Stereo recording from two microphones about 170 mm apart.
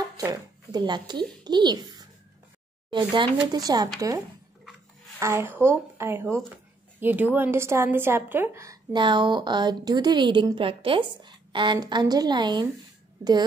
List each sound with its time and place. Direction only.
0.0 s a child's voice: 20° right (ahead or behind)
5.2 s a woman's voice: 15° right (ahead or behind)